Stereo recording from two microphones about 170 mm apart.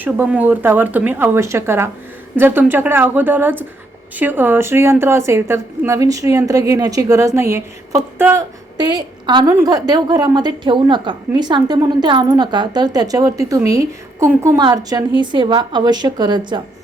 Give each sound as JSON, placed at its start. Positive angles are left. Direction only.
{"t": 0.0, "sound": "a woman's voice", "side_deg": -10}